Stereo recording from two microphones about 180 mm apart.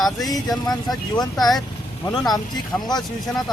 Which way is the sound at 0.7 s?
20° left (ahead or behind).